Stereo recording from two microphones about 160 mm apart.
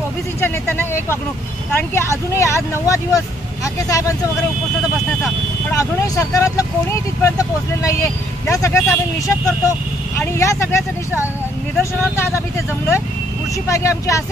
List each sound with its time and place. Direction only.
0.4 s speech: 15° left (ahead or behind)
5.7 s speech: 20° left (ahead or behind)
13.7 s speech: 20° left (ahead or behind)